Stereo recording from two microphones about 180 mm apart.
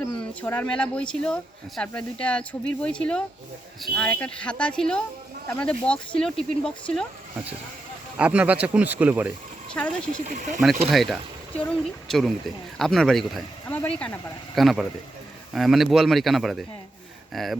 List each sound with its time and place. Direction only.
0.2 s speech: 10° left (ahead or behind)
8.2 s speech: 5° right (ahead or behind)
10.2 s speech: 45° right (ahead or behind)
10.9 s speech: centre (ahead or behind)